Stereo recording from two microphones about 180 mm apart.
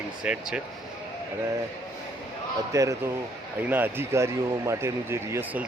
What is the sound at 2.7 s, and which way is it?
Speech, 20° right (ahead or behind).